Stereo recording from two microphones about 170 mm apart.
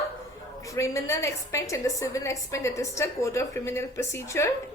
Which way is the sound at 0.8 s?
15° left (ahead or behind).